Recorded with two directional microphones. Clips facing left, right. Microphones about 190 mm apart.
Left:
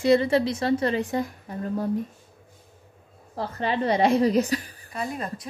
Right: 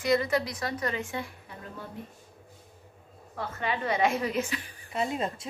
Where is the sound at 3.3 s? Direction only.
35° left (ahead or behind).